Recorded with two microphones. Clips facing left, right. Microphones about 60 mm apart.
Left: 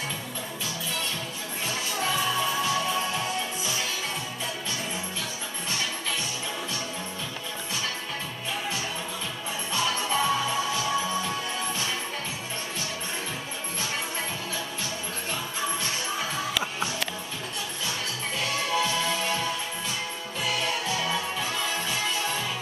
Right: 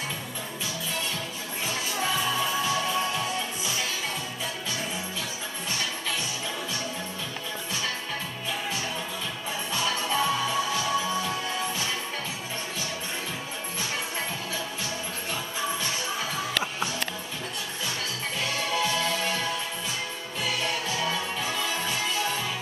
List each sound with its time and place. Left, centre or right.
2.0 s music: centre
9.7 s music: centre
18.7 s music: centre
21.0 s music: centre